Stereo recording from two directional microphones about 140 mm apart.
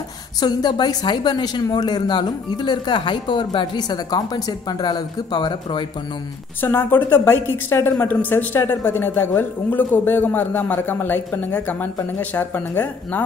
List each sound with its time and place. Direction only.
0.4 s speech: 30° left (ahead or behind)
6.6 s a woman's voice: 15° left (ahead or behind)